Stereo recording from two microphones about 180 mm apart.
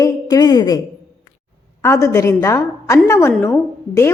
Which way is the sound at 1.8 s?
15° left (ahead or behind).